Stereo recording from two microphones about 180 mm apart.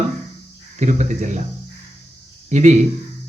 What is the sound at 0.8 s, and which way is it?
Speech, 40° right (ahead or behind).